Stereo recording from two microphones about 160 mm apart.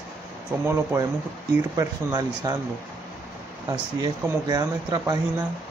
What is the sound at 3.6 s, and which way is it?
Speech, 25° right (ahead or behind).